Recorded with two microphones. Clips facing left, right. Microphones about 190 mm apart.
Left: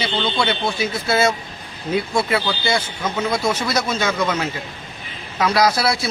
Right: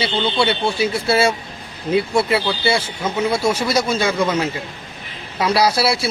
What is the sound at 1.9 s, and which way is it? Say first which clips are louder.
Speech: right 3 dB; 10° right (ahead or behind).